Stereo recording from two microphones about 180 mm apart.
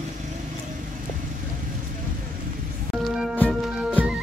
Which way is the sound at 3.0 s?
5° right (ahead or behind).